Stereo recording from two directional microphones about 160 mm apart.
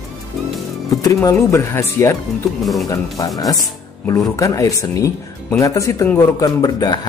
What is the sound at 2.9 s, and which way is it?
Speech, 20° left (ahead or behind).